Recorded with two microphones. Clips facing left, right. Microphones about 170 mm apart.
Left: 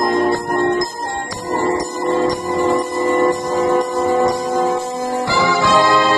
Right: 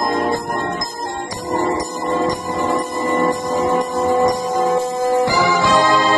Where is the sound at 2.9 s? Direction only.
20° right (ahead or behind).